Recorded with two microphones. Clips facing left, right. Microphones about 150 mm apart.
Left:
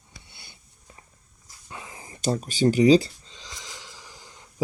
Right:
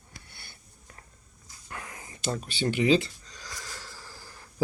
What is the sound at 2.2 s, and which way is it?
Speech, 40° left (ahead or behind).